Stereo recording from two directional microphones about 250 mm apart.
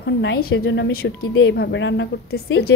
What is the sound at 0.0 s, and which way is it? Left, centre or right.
A woman's voice, left.